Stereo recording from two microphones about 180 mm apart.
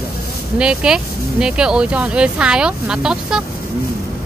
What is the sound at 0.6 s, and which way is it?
Speech, 5° right (ahead or behind).